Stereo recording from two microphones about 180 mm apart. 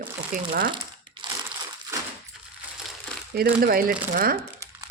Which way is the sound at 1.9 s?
15° right (ahead or behind).